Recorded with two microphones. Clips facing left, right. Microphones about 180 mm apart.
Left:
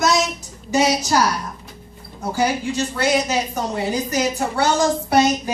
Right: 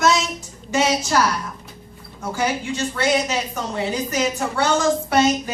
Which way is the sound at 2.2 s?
35° left (ahead or behind).